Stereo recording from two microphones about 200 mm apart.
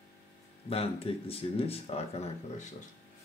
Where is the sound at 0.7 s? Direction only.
30° left (ahead or behind).